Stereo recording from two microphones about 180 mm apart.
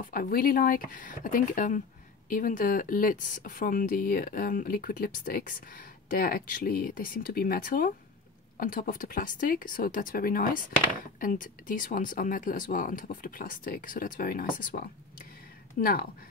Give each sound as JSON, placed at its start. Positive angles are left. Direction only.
{"t": 0.0, "sound": "speech", "side_deg": 50}